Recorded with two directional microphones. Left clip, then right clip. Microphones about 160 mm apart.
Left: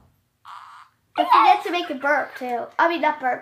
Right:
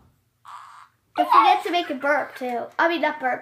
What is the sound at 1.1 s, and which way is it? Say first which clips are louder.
Speech: left 1 dB; centre (ahead or behind).